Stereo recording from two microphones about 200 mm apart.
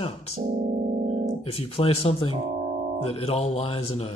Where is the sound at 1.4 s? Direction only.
30° left (ahead or behind).